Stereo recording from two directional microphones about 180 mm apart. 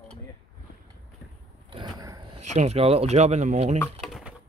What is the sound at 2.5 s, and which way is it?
Speech, 35° right (ahead or behind).